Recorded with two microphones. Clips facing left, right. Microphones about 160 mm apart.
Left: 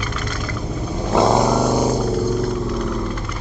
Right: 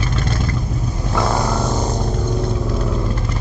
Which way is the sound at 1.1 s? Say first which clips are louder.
Left 5 dB; 20° left (ahead or behind).